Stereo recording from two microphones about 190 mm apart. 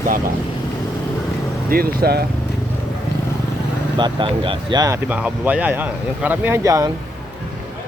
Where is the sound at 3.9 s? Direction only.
25° right (ahead or behind).